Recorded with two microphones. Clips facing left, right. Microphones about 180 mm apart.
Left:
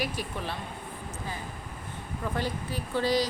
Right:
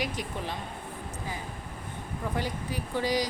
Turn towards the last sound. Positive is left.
turn(degrees=-15)  # may be behind; listen again after turning